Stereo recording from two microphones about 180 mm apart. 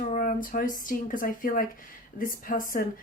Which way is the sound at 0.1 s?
45° left (ahead or behind).